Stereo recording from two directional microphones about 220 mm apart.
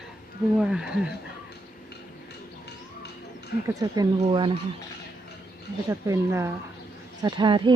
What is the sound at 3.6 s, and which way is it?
Speech, 15° right (ahead or behind).